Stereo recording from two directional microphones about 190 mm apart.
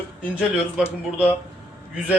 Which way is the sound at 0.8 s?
5° right (ahead or behind).